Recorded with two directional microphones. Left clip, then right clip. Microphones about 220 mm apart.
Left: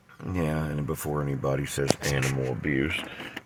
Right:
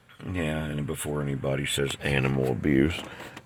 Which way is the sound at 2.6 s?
25° right (ahead or behind).